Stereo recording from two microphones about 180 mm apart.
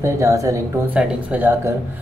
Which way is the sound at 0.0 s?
15° right (ahead or behind).